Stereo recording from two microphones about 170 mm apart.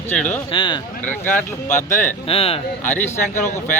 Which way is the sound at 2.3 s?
35° left (ahead or behind).